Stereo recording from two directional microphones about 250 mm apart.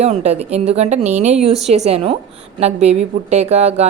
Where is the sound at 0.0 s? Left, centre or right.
Right.